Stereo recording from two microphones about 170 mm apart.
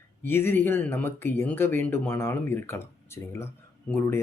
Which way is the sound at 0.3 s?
10° left (ahead or behind).